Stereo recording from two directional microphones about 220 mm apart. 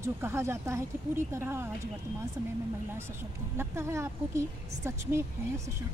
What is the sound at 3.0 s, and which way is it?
A woman's voice, 10° right (ahead or behind).